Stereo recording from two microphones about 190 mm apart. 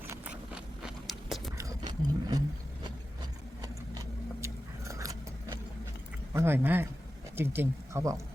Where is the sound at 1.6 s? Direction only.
20° right (ahead or behind).